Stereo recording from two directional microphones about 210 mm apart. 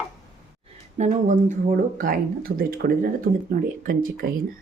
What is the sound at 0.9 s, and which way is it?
Speech, 35° right (ahead or behind).